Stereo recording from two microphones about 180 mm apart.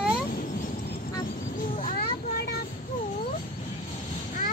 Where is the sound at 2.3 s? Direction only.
65° left (ahead or behind).